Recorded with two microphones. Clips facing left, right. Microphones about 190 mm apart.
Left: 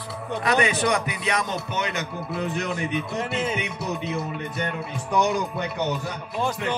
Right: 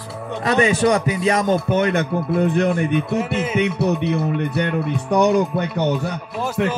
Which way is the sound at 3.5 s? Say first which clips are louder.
Right 10 dB; 65° right (ahead or behind).